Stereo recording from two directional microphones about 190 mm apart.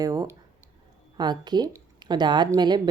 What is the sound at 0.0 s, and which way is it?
Speech, 20° right (ahead or behind).